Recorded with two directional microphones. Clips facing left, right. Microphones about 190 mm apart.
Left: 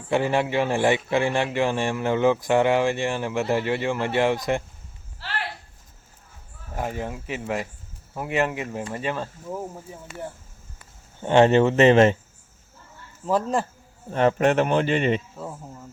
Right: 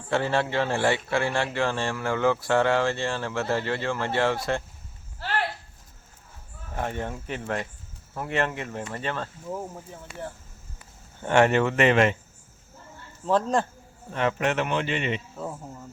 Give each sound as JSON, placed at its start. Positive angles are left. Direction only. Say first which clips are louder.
{"t": 0.1, "sound": "a man's voice", "louder": "left 3 dB", "side_deg": 15}
{"t": 6.7, "sound": "a man's voice", "louder": "left 1 dB", "side_deg": 5}
{"t": 11.2, "sound": "speech", "louder": "left 4 dB", "side_deg": 20}
{"t": 13.2, "sound": "a man's voice", "louder": "even", "side_deg": 5}
{"t": 14.1, "sound": "a man's voice", "louder": "left 6 dB", "side_deg": 40}
{"t": 15.4, "sound": "speech", "louder": "right 1 dB", "side_deg": 0}